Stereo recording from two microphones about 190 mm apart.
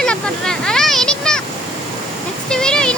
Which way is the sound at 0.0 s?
5° left (ahead or behind).